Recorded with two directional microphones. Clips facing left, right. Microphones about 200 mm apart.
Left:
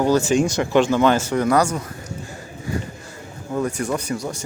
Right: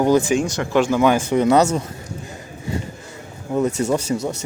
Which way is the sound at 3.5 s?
25° right (ahead or behind).